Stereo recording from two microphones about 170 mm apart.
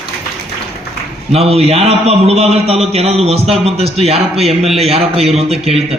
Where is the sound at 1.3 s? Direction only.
35° right (ahead or behind).